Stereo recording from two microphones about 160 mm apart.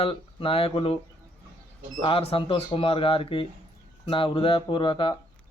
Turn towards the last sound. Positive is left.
turn(degrees=35)  # may be behind; listen again after turning